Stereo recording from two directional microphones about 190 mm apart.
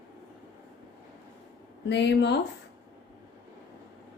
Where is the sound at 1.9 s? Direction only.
65° left (ahead or behind).